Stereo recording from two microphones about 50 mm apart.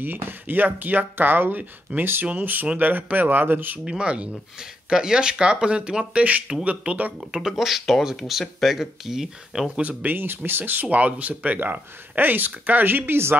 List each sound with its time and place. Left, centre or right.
0.2 s speech: right
3.8 s speech: centre
7.2 s speech: centre
10.0 s speech: right